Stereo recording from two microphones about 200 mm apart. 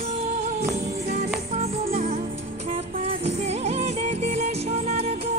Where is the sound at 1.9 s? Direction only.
45° right (ahead or behind).